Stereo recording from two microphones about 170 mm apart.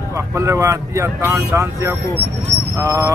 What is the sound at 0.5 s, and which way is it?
Speech, 15° right (ahead or behind).